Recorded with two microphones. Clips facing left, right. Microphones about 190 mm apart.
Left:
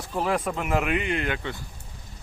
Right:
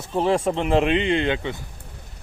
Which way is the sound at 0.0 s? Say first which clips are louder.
Right 5 dB; 25° right (ahead or behind).